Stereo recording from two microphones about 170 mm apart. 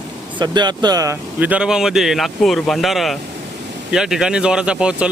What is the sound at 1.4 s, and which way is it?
Speech, 5° right (ahead or behind).